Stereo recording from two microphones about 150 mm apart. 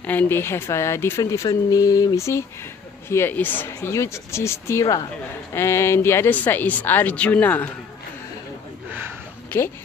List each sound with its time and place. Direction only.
0.0 s speech: 10° left (ahead or behind)